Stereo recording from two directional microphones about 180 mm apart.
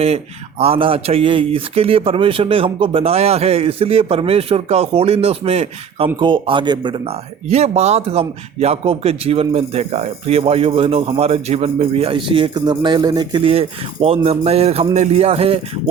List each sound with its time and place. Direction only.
0.6 s a man's voice: 30° right (ahead or behind)